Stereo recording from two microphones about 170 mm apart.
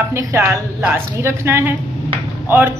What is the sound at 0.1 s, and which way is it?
Speech, 15° right (ahead or behind).